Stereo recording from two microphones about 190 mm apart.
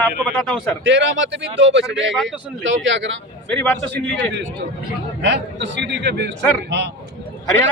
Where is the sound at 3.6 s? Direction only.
10° left (ahead or behind).